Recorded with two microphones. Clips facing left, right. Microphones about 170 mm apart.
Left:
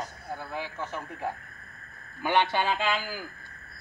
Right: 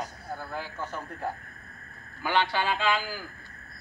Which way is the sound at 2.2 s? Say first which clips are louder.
Left 2 dB; 20° left (ahead or behind).